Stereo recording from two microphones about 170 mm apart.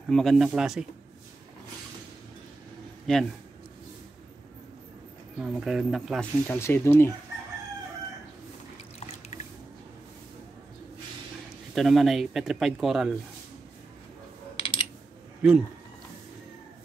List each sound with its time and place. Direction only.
0.1 s speech: centre (ahead or behind)
3.1 s speech: centre (ahead or behind)
5.4 s speech: 5° right (ahead or behind)
6.4 s speech: 10° left (ahead or behind)
11.7 s speech: centre (ahead or behind)
14.6 s typing: 30° left (ahead or behind)